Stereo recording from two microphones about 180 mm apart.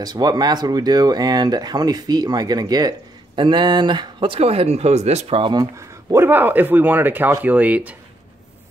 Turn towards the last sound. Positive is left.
turn(degrees=-10)  # may be behind; listen again after turning